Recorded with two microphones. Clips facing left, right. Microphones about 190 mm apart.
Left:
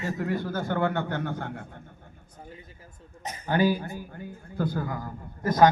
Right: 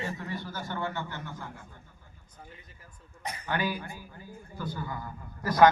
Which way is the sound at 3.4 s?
40° left (ahead or behind).